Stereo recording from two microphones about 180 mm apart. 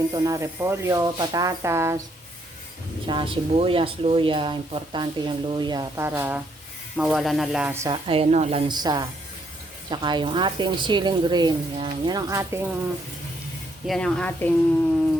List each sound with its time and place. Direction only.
0.1 s speech: 20° right (ahead or behind)
3.1 s speech: 30° right (ahead or behind); by 7.7 s centre (ahead or behind)
7.7 s speech: 15° right (ahead or behind)
8.0 s speech: 30° right (ahead or behind); by 12.6 s 15° right (ahead or behind)
13.8 s speech: 5° left (ahead or behind)